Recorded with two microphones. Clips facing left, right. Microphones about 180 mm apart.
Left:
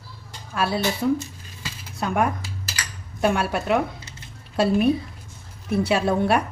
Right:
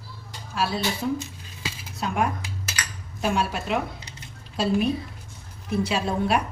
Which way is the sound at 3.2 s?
55° left (ahead or behind).